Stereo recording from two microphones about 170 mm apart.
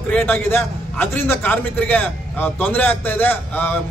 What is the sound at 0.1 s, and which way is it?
A man's voice, 10° left (ahead or behind).